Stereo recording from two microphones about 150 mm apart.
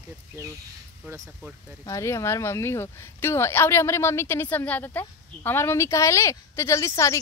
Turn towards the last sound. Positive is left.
turn(degrees=20)  # may be behind; listen again after turning